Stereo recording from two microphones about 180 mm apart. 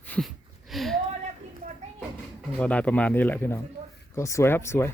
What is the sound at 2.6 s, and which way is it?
Speech, 5° left (ahead or behind).